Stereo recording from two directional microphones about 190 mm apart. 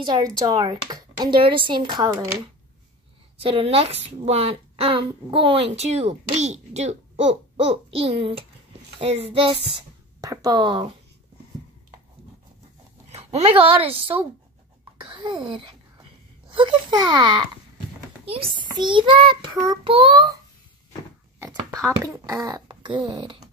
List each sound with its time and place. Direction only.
0.0 s speech: 20° right (ahead or behind)
3.3 s a woman's voice: 30° right (ahead or behind)
13.1 s a woman's voice: 35° right (ahead or behind)
21.4 s a child's voice: 15° right (ahead or behind)